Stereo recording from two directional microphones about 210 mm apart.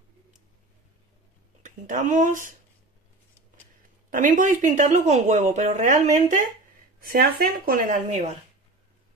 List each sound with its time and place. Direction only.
1.6 s speech: 35° right (ahead or behind)
4.1 s a woman's voice: 40° right (ahead or behind)